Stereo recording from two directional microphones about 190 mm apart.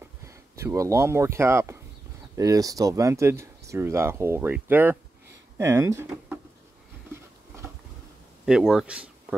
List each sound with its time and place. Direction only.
0.3 s speech: 15° right (ahead or behind)
8.5 s speech: 5° right (ahead or behind)